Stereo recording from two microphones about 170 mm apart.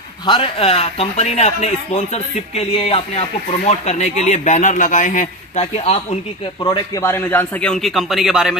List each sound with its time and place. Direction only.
0.3 s speech: 35° left (ahead or behind)
7.0 s a man's voice: 15° left (ahead or behind); by 8.5 s centre (ahead or behind)